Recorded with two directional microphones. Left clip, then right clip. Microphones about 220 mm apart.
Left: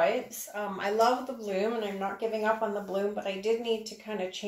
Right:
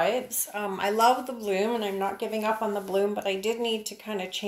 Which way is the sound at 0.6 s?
50° right (ahead or behind).